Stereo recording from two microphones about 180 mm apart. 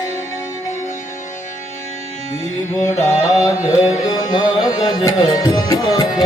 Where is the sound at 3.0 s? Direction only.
15° left (ahead or behind).